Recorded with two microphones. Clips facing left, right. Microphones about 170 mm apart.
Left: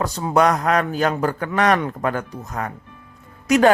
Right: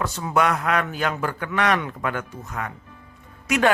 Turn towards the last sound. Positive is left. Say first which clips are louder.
# left 6 dB
turn(degrees=40)  # may be behind; listen again after turning